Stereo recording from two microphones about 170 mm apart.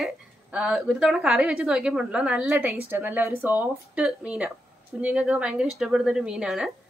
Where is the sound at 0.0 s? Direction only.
5° right (ahead or behind).